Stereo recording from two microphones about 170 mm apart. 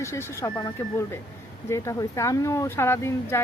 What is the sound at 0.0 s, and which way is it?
Speech, 15° left (ahead or behind).